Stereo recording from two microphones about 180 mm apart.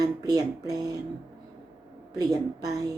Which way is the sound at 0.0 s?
20° right (ahead or behind).